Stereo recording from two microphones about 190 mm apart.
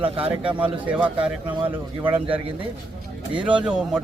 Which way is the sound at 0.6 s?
5° right (ahead or behind).